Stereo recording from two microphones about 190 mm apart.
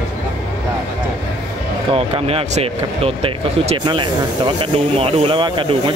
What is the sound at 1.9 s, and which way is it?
Speech, 30° right (ahead or behind).